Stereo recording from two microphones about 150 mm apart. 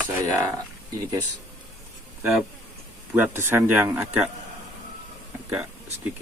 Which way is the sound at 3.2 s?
15° right (ahead or behind).